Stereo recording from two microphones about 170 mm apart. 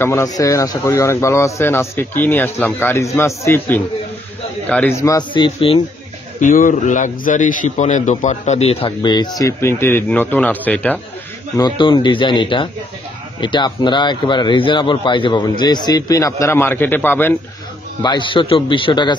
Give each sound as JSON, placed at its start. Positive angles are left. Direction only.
{"t": 0.0, "sound": "a man's voice", "side_deg": 15}
{"t": 6.4, "sound": "a man's voice", "side_deg": 50}
{"t": 11.5, "sound": "a man's voice", "side_deg": 25}
{"t": 18.0, "sound": "a man's voice", "side_deg": 30}